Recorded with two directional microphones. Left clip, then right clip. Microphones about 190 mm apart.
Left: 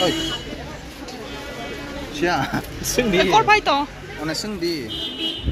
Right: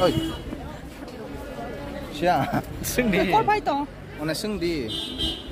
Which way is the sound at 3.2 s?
Centre (ahead or behind).